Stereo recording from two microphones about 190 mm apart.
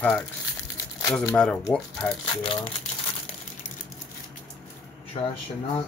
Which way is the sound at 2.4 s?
30° left (ahead or behind).